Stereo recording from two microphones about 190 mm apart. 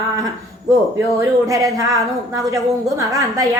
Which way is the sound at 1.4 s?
15° right (ahead or behind).